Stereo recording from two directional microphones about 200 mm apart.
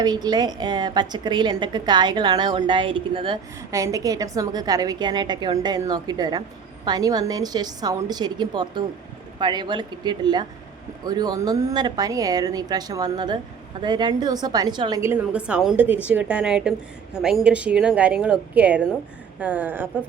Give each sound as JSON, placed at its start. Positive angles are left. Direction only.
{"t": 0.0, "sound": "a woman's voice", "side_deg": -20}